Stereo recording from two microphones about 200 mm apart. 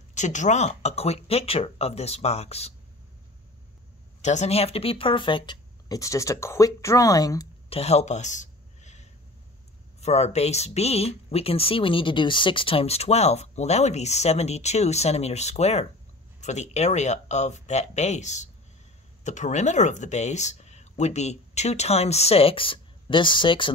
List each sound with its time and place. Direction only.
0.1 s speech: 35° left (ahead or behind)
4.2 s speech: 35° left (ahead or behind); by 7.4 s 20° left (ahead or behind)
7.7 s a sound: 30° left (ahead or behind)
9.9 s speech: 35° left (ahead or behind)